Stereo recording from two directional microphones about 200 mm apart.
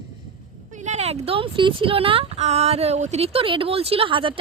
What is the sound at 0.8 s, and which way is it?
Speech, 35° right (ahead or behind).